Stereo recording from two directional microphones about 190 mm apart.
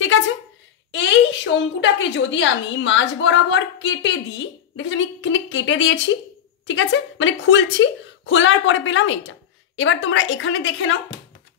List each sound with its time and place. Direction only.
0.9 s a woman's voice: 75° left (ahead or behind)